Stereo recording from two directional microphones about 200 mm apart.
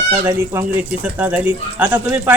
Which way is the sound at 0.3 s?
10° right (ahead or behind).